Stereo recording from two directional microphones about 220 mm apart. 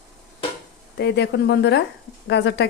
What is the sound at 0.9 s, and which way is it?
Speech, 50° left (ahead or behind).